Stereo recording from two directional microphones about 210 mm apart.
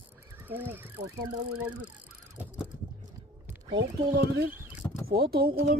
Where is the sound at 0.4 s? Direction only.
10° right (ahead or behind).